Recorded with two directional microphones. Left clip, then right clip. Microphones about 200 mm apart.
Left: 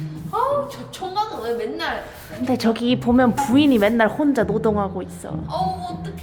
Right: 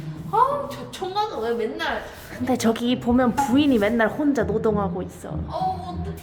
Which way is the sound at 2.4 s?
5° left (ahead or behind).